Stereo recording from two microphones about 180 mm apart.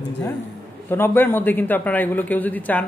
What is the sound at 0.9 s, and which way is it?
A man's voice, 10° left (ahead or behind).